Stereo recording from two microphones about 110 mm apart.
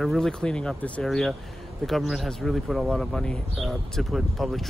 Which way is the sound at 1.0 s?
Centre (ahead or behind).